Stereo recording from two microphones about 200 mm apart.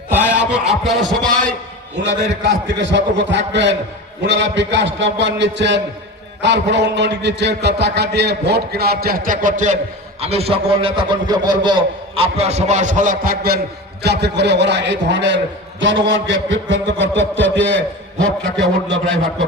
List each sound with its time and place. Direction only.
0.1 s a man's voice: 10° right (ahead or behind)
2.0 s a man's voice: 60° right (ahead or behind)